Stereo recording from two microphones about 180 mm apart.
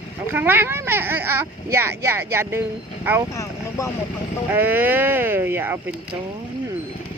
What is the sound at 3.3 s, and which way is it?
Speech, 15° left (ahead or behind).